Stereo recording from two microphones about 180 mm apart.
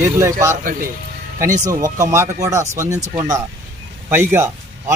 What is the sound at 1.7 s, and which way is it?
Speech, 15° right (ahead or behind).